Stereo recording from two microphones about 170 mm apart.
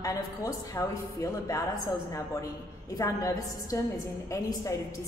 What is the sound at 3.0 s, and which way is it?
A man's voice, 20° left (ahead or behind).